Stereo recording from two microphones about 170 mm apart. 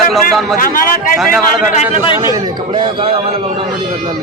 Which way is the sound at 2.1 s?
20° right (ahead or behind).